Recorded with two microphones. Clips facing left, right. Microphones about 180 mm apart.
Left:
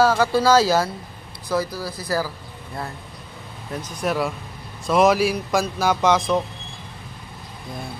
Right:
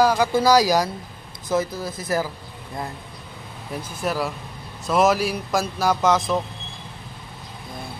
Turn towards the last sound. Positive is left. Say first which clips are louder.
# left 1 dB
turn(degrees=0)  # may be behind; listen again after turning